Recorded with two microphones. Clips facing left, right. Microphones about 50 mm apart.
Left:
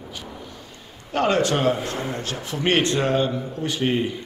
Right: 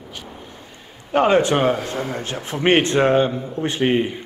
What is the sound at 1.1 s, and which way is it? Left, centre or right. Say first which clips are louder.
Speech: right 5 dB; centre.